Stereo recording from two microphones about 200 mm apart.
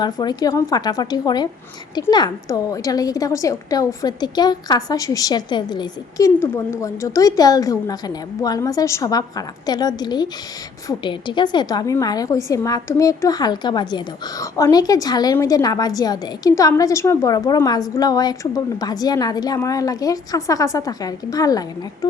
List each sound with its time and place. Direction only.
0.0 s a woman's voice: 20° left (ahead or behind)